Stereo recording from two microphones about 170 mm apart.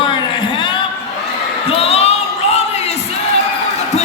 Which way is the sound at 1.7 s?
35° left (ahead or behind).